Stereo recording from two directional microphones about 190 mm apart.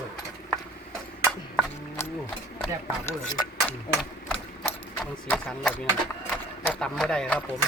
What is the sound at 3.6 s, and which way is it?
Speech, 5° left (ahead or behind).